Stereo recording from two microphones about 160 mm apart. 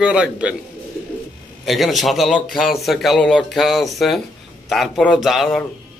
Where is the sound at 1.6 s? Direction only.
Centre (ahead or behind).